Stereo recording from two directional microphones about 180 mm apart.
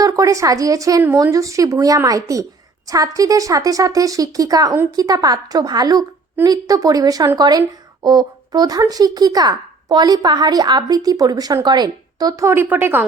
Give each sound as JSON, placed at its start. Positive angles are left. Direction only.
{"t": 0.0, "sound": "speech", "side_deg": -20}